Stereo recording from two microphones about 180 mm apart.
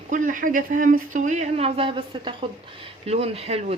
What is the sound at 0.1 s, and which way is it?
Speech, 45° right (ahead or behind).